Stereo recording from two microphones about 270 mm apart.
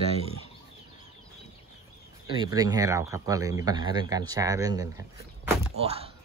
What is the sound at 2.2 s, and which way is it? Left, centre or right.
Speech, centre.